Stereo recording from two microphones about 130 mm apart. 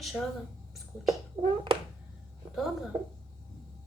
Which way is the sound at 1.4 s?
45° right (ahead or behind).